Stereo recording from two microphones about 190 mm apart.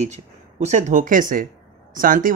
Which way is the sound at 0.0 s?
35° right (ahead or behind).